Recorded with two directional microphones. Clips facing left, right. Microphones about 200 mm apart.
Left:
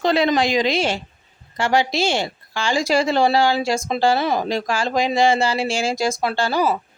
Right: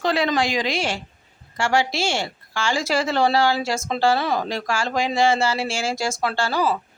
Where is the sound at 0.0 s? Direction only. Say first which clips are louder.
Left 3 dB; 20° left (ahead or behind).